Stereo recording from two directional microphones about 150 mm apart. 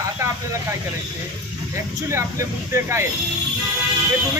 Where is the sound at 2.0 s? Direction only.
20° right (ahead or behind).